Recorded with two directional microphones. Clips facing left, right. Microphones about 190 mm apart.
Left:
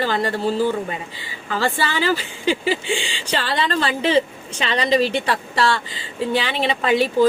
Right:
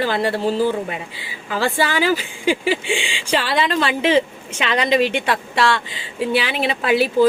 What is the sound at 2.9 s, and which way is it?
Speech, 40° left (ahead or behind).